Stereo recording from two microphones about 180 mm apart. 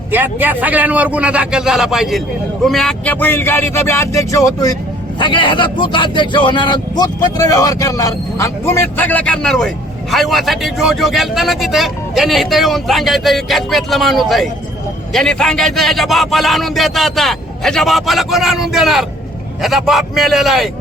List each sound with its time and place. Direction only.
0.1 s a man's voice: 10° right (ahead or behind); by 4.7 s 15° left (ahead or behind)
5.2 s a man's voice: 25° left (ahead or behind); by 20.7 s centre (ahead or behind)